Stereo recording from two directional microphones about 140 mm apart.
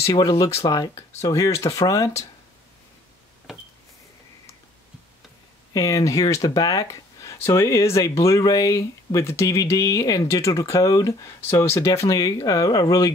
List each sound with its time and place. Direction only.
0.0 s speech: 25° left (ahead or behind)
3.5 s a sound: 5° right (ahead or behind)
5.7 s speech: 25° left (ahead or behind)